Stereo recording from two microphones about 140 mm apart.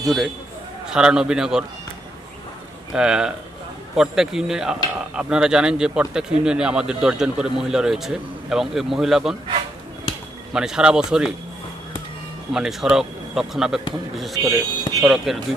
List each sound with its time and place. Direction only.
0.0 s a man's voice: centre (ahead or behind)
2.9 s speech: 5° right (ahead or behind)
10.5 s speech: 5° right (ahead or behind)
12.5 s speech: 5° right (ahead or behind)
14.4 s speech: 25° right (ahead or behind)
15.0 s speech: centre (ahead or behind)